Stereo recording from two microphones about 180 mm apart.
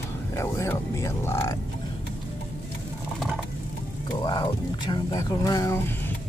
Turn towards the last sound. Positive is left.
turn(degrees=20)  # may be behind; listen again after turning